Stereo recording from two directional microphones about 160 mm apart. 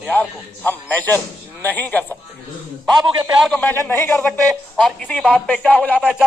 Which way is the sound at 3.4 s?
10° left (ahead or behind).